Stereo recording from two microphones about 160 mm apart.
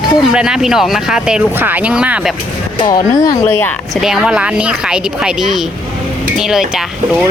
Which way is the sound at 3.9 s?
5° right (ahead or behind).